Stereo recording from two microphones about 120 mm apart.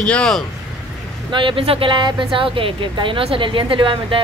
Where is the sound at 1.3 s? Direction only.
45° right (ahead or behind).